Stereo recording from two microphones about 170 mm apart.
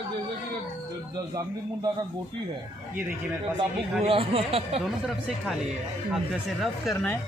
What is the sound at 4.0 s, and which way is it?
Speech, 35° right (ahead or behind).